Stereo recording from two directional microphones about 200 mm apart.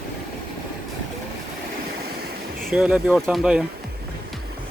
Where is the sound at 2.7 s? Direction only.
5° right (ahead or behind).